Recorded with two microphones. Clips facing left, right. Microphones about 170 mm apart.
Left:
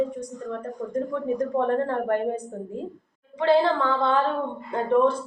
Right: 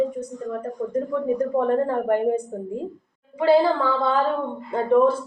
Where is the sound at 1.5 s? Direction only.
10° right (ahead or behind).